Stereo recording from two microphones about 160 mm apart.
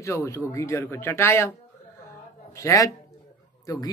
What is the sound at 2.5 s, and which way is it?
Speech, 20° left (ahead or behind).